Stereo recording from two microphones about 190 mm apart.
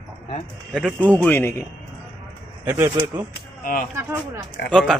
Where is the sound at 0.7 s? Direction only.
5° left (ahead or behind).